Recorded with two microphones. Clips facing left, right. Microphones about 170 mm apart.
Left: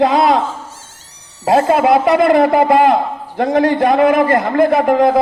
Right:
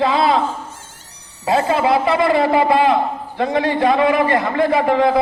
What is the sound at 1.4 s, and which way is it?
A man's voice, 50° left (ahead or behind).